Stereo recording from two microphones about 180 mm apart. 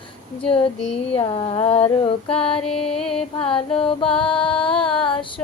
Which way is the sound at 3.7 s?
30° left (ahead or behind).